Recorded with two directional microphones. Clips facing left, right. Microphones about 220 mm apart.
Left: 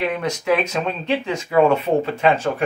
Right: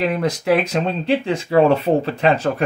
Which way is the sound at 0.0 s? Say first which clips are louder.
Right 3 dB; 35° right (ahead or behind).